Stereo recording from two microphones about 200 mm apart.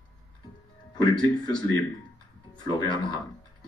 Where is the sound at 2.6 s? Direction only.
20° left (ahead or behind).